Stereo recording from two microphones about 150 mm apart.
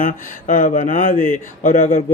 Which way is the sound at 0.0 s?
60° left (ahead or behind).